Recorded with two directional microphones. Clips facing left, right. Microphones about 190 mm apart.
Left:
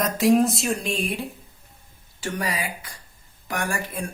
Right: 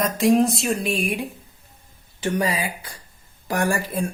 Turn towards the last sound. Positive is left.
turn(degrees=-30)  # may be behind; listen again after turning